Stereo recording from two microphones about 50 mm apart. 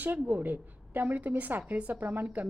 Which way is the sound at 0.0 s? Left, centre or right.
Right.